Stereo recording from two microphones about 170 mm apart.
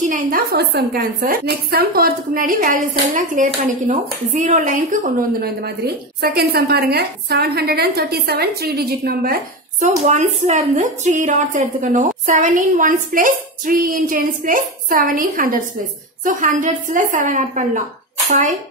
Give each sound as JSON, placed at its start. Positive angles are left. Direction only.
{"t": 0.0, "sound": "a woman's voice", "side_deg": -50}
{"t": 9.8, "sound": "a woman's voice", "side_deg": -45}